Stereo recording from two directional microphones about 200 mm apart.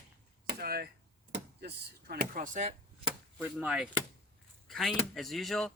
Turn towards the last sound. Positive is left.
turn(degrees=0)  # may be behind; listen again after turning